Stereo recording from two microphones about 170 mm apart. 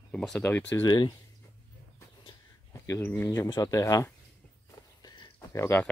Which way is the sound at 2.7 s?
15° left (ahead or behind).